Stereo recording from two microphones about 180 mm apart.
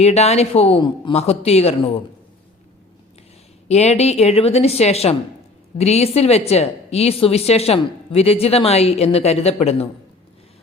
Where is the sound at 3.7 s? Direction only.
35° left (ahead or behind).